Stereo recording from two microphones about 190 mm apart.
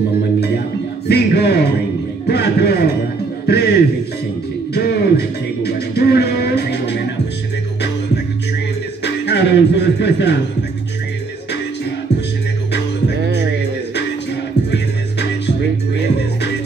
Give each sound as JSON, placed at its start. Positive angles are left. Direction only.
{"t": 1.0, "sound": "a man's voice", "side_deg": 60}
{"t": 3.4, "sound": "chuckle", "side_deg": 60}
{"t": 4.7, "sound": "music", "side_deg": 60}
{"t": 9.0, "sound": "music", "side_deg": 65}
{"t": 13.3, "sound": "music", "side_deg": 65}